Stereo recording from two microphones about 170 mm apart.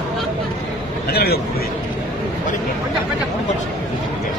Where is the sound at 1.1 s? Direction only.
65° left (ahead or behind).